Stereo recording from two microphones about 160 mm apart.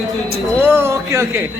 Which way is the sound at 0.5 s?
15° right (ahead or behind).